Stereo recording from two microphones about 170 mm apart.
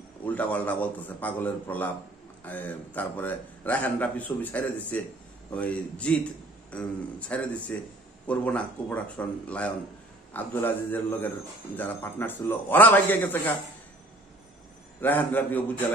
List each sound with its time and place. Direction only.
0.2 s a man's voice: 10° left (ahead or behind)
15.0 s a man's voice: 10° left (ahead or behind)